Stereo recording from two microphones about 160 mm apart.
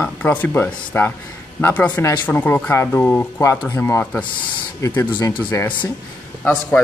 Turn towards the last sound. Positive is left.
turn(degrees=5)  # may be behind; listen again after turning